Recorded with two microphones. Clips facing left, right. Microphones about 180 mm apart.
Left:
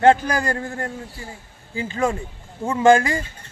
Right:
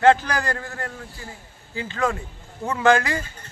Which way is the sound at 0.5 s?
25° left (ahead or behind).